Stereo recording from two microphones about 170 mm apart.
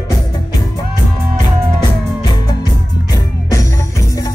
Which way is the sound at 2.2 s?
25° left (ahead or behind).